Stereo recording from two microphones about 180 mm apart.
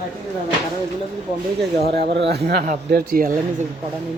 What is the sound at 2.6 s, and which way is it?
Speech, 50° right (ahead or behind).